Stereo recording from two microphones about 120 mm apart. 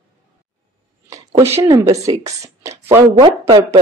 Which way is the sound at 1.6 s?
30° right (ahead or behind).